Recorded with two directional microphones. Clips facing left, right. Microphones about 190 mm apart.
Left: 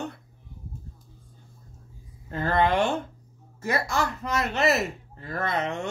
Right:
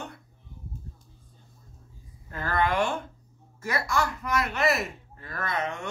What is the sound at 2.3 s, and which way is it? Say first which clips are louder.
Speech: left 3 dB; 25° left (ahead or behind).